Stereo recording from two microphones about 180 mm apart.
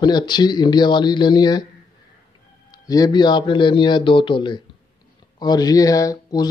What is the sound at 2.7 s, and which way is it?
Speech, 20° left (ahead or behind).